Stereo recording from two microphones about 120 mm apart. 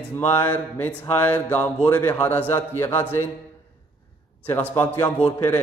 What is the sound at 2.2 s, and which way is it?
Speech, 20° left (ahead or behind).